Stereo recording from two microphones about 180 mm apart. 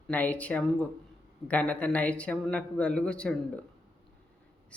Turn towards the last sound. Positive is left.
turn(degrees=5)  # may be behind; listen again after turning